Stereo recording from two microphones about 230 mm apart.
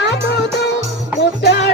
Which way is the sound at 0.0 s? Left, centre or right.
Left.